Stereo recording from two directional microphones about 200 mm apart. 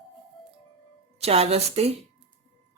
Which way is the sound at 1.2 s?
30° right (ahead or behind).